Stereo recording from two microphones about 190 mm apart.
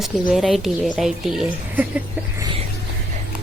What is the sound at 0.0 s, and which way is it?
A woman's voice, centre (ahead or behind).